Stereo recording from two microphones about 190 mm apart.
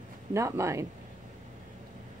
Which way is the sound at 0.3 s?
15° right (ahead or behind).